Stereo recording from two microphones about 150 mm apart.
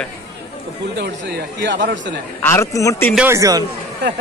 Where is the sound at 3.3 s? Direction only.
20° right (ahead or behind).